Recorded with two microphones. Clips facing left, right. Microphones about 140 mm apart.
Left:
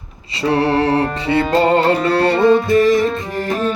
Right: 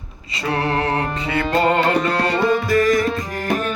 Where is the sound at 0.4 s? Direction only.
30° left (ahead or behind).